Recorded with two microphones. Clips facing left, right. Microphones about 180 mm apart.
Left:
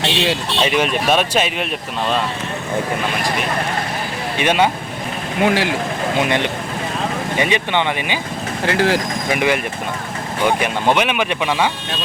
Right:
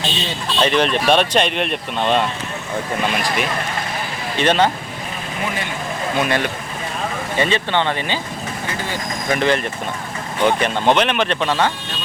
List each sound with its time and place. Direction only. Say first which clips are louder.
0.0 s speech: left 6 dB; 70° left (ahead or behind)
0.6 s speech: right 2 dB; 10° left (ahead or behind)
4.4 s speech: even; 10° left (ahead or behind)
5.4 s speech: left 10 dB; 85° left
6.1 s speech: even; 20° left (ahead or behind)
8.6 s speech: left 12 dB; 90° left
9.3 s speech: right 1 dB; 10° left (ahead or behind)